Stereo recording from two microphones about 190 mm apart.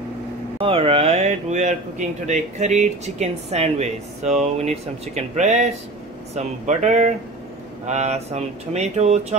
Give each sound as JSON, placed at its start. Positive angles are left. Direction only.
{"t": 0.6, "sound": "speech", "side_deg": -30}